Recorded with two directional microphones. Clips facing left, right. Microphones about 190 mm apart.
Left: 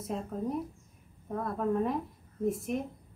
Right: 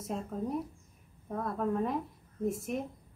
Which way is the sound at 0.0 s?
Centre (ahead or behind).